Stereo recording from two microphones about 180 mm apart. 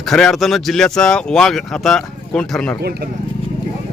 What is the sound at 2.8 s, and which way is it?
Speech, 60° right (ahead or behind).